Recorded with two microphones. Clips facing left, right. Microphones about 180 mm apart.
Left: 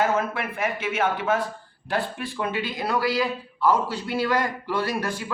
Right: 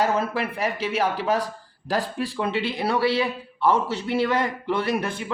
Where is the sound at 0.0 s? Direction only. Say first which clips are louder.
Right 1 dB; 35° right (ahead or behind).